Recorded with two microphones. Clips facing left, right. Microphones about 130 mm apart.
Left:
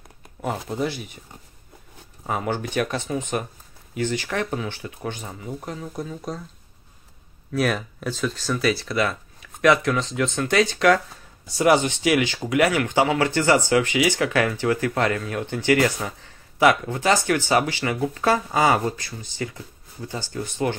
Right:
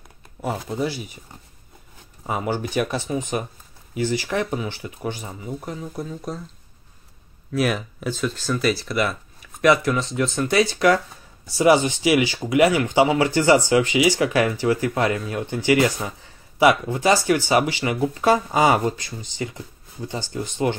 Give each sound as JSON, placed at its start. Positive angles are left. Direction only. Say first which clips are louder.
{"t": 0.4, "sound": "speech", "louder": "right 1 dB", "side_deg": 0}
{"t": 2.2, "sound": "speech", "louder": "right 1 dB", "side_deg": -5}
{"t": 7.5, "sound": "speech", "louder": "right 1 dB", "side_deg": -5}